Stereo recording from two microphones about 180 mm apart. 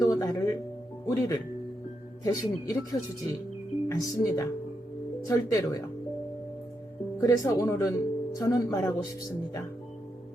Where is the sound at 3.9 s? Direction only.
20° left (ahead or behind).